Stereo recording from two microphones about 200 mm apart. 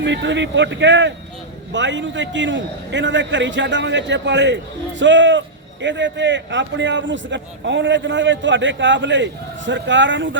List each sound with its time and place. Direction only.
0.0 s a man's voice: 60° right (ahead or behind)